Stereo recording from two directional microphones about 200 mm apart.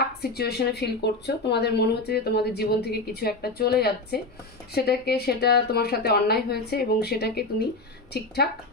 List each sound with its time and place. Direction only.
0.2 s speech: 55° left (ahead or behind)